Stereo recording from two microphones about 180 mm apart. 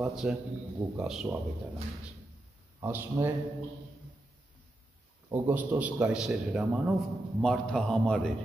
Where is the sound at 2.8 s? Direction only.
15° right (ahead or behind).